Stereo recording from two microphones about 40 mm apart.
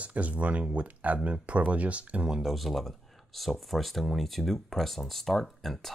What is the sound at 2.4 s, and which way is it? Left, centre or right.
Speech, centre.